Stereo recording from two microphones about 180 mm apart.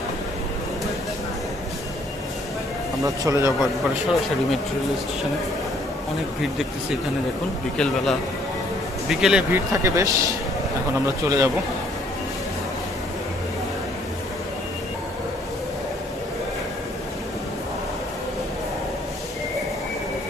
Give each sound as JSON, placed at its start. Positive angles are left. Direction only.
{"t": 3.0, "sound": "speech", "side_deg": -15}
{"t": 7.7, "sound": "speech", "side_deg": 5}
{"t": 9.5, "sound": "speech", "side_deg": -15}
{"t": 11.2, "sound": "a man's voice", "side_deg": -20}